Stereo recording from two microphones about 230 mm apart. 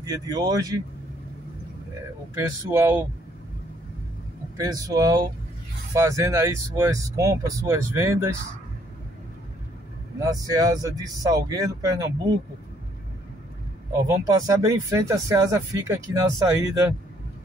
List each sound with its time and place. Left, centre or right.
0.0 s speech: centre
2.3 s speech: centre
4.6 s speech: centre
10.3 s speech: centre
14.0 s speech: centre